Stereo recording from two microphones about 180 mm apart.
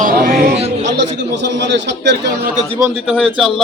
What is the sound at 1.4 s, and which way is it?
Speech, 75° right (ahead or behind).